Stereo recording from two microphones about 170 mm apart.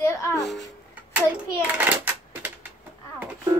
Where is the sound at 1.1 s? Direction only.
10° right (ahead or behind).